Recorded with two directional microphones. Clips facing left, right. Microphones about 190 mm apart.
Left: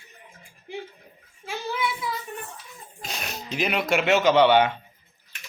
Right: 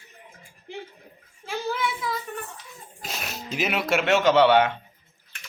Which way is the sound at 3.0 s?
Centre (ahead or behind).